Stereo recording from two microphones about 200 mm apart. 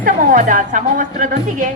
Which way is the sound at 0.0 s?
40° right (ahead or behind).